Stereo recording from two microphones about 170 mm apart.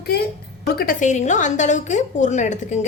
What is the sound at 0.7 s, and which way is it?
A woman's voice, 60° left (ahead or behind).